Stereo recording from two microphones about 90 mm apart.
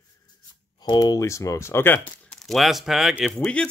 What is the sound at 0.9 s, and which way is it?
Speech, 40° left (ahead or behind).